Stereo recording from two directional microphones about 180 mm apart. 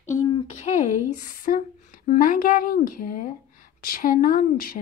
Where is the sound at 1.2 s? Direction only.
50° left (ahead or behind).